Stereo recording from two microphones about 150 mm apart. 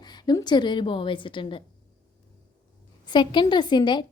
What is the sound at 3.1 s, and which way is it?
Speech, 30° left (ahead or behind).